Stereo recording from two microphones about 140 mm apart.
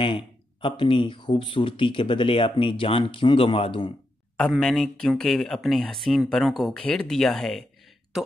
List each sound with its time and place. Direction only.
0.0 s speech: 40° left (ahead or behind)
4.4 s speech: 5° left (ahead or behind)